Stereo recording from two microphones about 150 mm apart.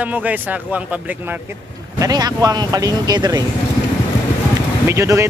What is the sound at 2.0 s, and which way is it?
Speech, 25° right (ahead or behind).